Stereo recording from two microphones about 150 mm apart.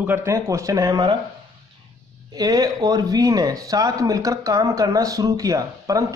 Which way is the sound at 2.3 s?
25° right (ahead or behind).